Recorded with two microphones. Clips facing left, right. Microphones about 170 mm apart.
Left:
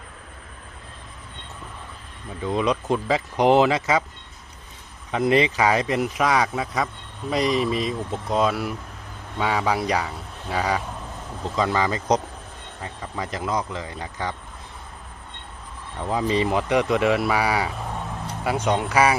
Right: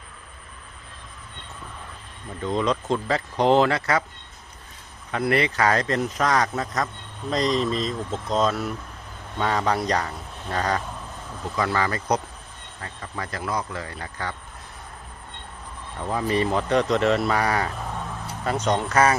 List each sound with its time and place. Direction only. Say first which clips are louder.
2.4 s speech: left 1 dB; 10° left (ahead or behind)
5.1 s speech: left 3 dB; 20° left (ahead or behind)
11.4 s speech: left 2 dB; 20° left (ahead or behind)
16.0 s speech: left 1 dB; 15° left (ahead or behind)